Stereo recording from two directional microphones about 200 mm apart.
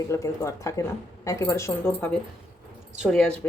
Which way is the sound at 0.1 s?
15° left (ahead or behind).